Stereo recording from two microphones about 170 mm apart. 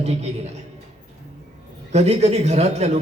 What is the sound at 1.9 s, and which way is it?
A man's voice, 40° right (ahead or behind).